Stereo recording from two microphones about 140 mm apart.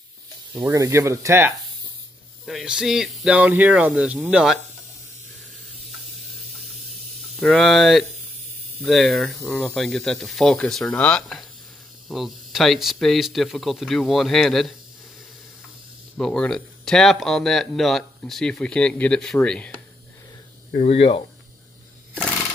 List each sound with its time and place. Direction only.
0.6 s speech: 20° right (ahead or behind)
2.4 s speech: 5° right (ahead or behind)
6.7 s snake: centre (ahead or behind)
8.8 s speech: centre (ahead or behind)
16.2 s speech: 5° left (ahead or behind)
20.7 s speech: 50° left (ahead or behind)